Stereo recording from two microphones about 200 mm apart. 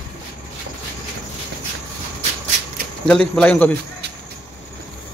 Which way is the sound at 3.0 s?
5° left (ahead or behind).